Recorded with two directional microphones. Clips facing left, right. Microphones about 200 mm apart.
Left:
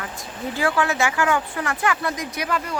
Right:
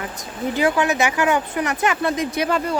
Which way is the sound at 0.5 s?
20° right (ahead or behind).